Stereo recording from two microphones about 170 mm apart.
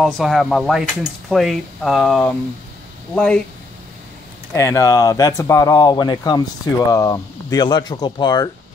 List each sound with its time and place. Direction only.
0.0 s speech: centre (ahead or behind)
4.6 s speech: 20° left (ahead or behind)